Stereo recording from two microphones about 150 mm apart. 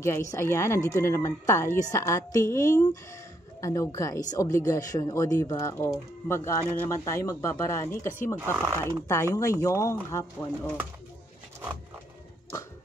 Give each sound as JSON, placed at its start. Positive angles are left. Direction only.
{"t": 0.0, "sound": "a woman's voice", "side_deg": 20}
{"t": 8.4, "sound": "speech", "side_deg": -20}
{"t": 9.0, "sound": "a woman's voice", "side_deg": 20}